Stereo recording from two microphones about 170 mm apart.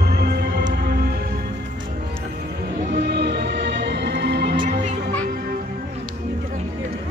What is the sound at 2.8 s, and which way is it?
Music, 75° right (ahead or behind).